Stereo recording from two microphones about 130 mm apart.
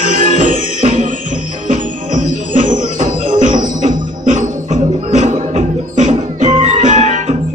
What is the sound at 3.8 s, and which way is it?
Music, 70° right (ahead or behind).